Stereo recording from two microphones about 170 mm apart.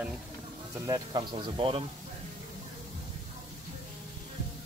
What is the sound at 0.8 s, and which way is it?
Speech, 25° right (ahead or behind).